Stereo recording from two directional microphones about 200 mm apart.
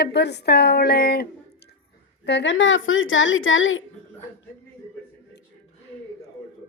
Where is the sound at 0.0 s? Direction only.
60° left (ahead or behind).